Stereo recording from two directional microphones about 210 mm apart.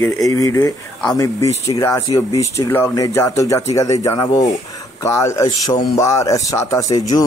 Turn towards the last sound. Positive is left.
turn(degrees=15)  # may be behind; listen again after turning